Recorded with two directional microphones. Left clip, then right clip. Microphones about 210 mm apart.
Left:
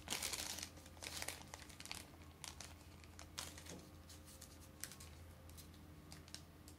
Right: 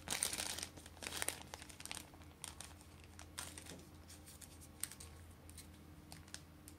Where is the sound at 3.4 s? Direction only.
5° right (ahead or behind).